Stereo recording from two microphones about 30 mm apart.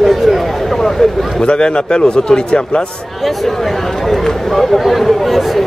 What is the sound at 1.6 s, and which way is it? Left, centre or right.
A man's voice, left.